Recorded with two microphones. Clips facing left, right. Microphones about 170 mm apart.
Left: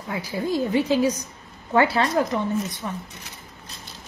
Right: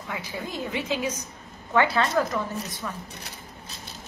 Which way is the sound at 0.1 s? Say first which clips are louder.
Left 8 dB; 35° left (ahead or behind).